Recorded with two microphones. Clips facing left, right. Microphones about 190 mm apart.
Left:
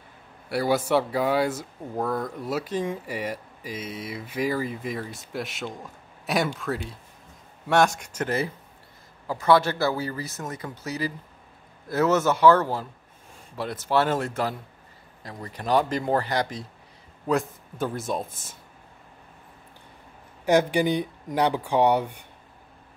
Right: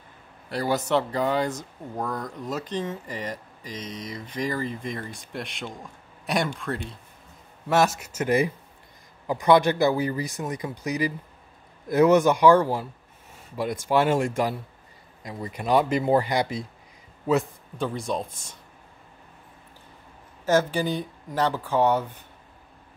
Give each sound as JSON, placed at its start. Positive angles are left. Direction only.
{"t": 0.5, "sound": "speech", "side_deg": 10}
{"t": 17.3, "sound": "speech", "side_deg": 0}
{"t": 20.4, "sound": "speech", "side_deg": 15}